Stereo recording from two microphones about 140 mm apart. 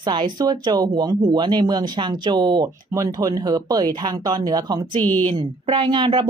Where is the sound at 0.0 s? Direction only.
30° right (ahead or behind).